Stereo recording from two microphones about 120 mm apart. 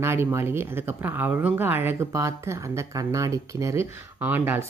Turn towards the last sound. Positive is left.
turn(degrees=-20)  # may be behind; listen again after turning